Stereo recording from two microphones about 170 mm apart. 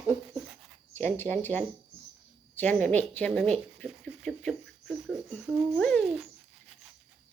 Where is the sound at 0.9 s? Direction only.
15° left (ahead or behind).